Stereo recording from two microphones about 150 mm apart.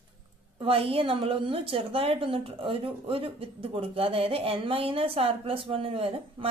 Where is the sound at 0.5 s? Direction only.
40° right (ahead or behind).